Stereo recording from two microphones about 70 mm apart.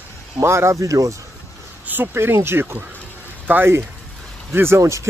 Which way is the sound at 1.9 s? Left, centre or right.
Right.